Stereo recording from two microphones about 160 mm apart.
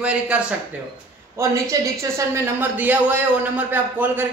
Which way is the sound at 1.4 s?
20° right (ahead or behind).